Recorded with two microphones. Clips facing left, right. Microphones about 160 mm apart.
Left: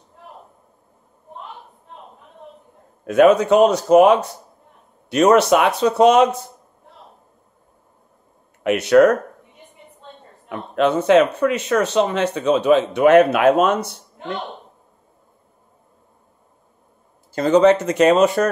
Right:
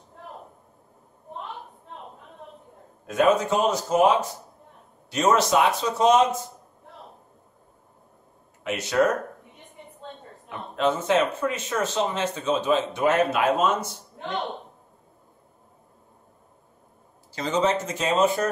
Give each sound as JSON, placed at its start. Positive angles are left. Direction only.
{"t": 3.1, "sound": "speech", "side_deg": 65}
{"t": 8.6, "sound": "speech", "side_deg": 65}
{"t": 10.5, "sound": "speech", "side_deg": 65}
{"t": 17.3, "sound": "speech", "side_deg": 55}